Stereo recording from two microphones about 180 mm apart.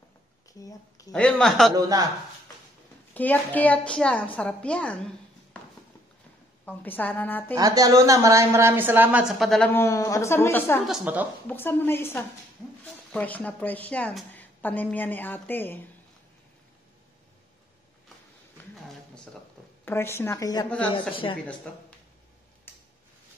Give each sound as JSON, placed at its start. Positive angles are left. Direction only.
{"t": 0.6, "sound": "speech", "side_deg": 20}
{"t": 1.1, "sound": "speech", "side_deg": 5}
{"t": 1.8, "sound": "speech", "side_deg": -20}
{"t": 3.2, "sound": "a woman's voice", "side_deg": 10}
{"t": 6.6, "sound": "a woman's voice", "side_deg": 10}
{"t": 7.5, "sound": "a woman's voice", "side_deg": -20}
{"t": 9.7, "sound": "a woman's voice", "side_deg": 15}
{"t": 10.9, "sound": "a woman's voice", "side_deg": -10}
{"t": 11.4, "sound": "a woman's voice", "side_deg": 10}
{"t": 18.6, "sound": "a sound", "side_deg": 5}
{"t": 19.8, "sound": "a woman's voice", "side_deg": 15}
{"t": 21.7, "sound": "a woman's voice", "side_deg": 5}
{"t": 22.7, "sound": "tick-tock", "side_deg": 10}